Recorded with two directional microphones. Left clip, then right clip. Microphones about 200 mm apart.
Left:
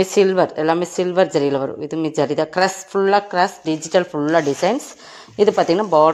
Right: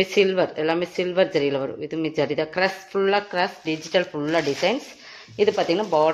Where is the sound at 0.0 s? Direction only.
30° left (ahead or behind).